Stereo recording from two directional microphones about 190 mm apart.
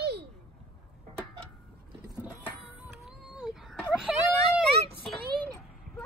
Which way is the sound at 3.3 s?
5° right (ahead or behind).